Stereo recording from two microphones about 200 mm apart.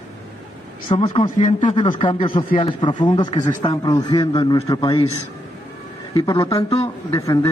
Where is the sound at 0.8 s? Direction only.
25° left (ahead or behind).